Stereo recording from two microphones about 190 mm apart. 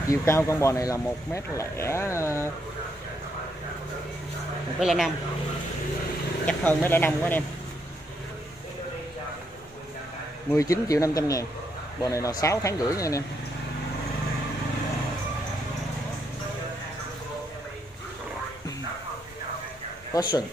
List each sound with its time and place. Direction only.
0.1 s speech: 15° left (ahead or behind)
4.7 s speech: centre (ahead or behind)
6.4 s speech: 10° left (ahead or behind)
10.5 s speech: 15° left (ahead or behind)
20.2 s speech: 20° left (ahead or behind)